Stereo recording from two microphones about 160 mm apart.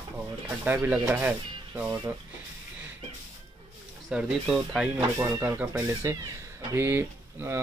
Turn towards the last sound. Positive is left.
turn(degrees=-15)  # may be behind; listen again after turning